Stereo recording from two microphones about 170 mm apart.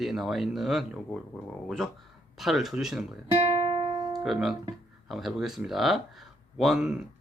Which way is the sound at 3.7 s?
25° right (ahead or behind).